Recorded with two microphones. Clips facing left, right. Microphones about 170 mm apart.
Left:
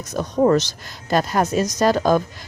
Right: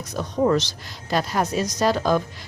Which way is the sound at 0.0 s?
45° left (ahead or behind).